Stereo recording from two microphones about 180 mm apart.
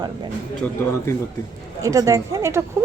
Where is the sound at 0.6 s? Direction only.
15° left (ahead or behind).